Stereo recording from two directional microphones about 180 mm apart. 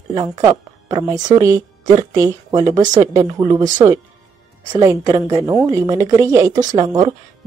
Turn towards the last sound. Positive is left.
turn(degrees=-20)  # may be behind; listen again after turning